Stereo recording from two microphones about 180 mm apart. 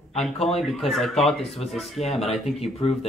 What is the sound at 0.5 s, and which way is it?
Speech, centre (ahead or behind).